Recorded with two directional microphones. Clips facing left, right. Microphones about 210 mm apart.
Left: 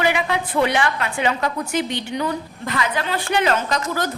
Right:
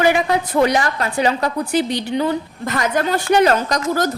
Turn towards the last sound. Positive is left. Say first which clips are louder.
# right 4 dB
turn(degrees=-40)  # may be behind; listen again after turning